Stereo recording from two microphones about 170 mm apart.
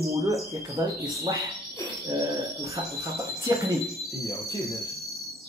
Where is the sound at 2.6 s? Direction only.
20° right (ahead or behind).